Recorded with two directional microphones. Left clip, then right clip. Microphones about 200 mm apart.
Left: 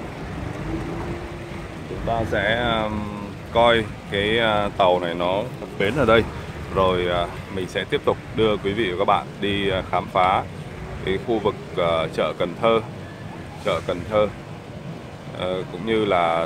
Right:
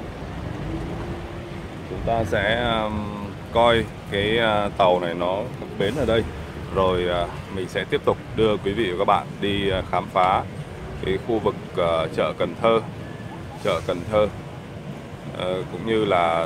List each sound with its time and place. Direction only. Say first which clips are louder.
2.0 s speech: even; 10° right (ahead or behind)
5.2 s speech: left 2 dB; 15° left (ahead or behind)
6.7 s speech: left 1 dB; centre (ahead or behind)
15.3 s speech: even; centre (ahead or behind)